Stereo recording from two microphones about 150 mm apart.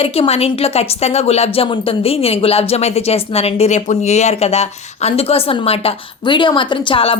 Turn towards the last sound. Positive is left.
turn(degrees=35)  # may be behind; listen again after turning